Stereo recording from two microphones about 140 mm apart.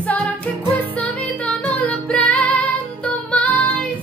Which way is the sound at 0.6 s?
35° right (ahead or behind).